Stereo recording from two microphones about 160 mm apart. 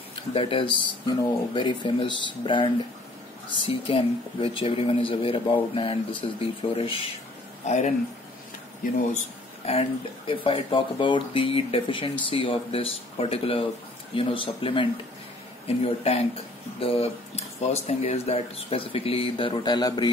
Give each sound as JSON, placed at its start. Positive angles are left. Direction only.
{"t": 0.3, "sound": "speech", "side_deg": 35}
{"t": 7.6, "sound": "speech", "side_deg": 50}
{"t": 9.7, "sound": "speech", "side_deg": 35}